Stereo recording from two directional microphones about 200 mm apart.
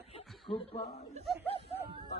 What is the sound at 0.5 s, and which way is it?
Speech, 30° left (ahead or behind).